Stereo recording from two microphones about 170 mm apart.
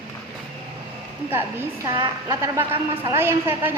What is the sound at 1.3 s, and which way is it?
A woman's voice, 15° right (ahead or behind).